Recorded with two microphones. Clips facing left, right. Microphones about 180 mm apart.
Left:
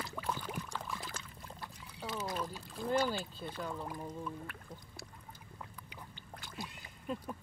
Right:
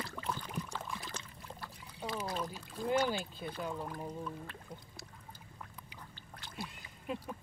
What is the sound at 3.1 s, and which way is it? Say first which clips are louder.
Speech: right 1 dB; 15° right (ahead or behind).